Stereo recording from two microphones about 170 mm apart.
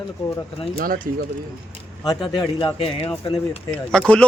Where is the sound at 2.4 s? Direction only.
25° left (ahead or behind).